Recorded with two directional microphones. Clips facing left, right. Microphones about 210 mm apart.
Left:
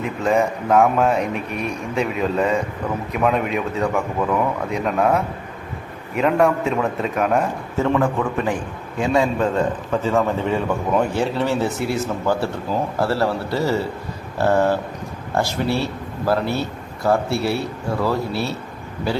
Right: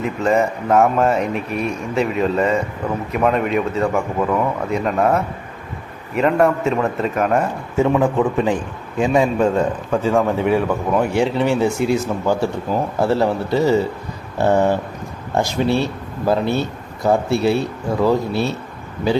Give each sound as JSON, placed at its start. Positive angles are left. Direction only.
{"t": 0.3, "sound": "speech", "side_deg": 0}
{"t": 7.8, "sound": "speech", "side_deg": -15}